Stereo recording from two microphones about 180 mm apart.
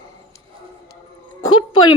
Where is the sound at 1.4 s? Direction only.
25° left (ahead or behind).